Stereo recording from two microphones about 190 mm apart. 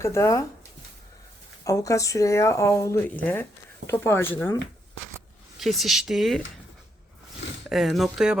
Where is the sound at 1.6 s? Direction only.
15° left (ahead or behind).